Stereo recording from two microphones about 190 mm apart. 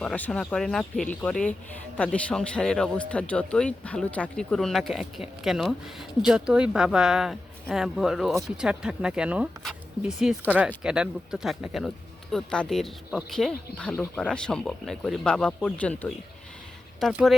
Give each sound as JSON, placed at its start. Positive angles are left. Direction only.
{"t": 0.0, "sound": "speech", "side_deg": 5}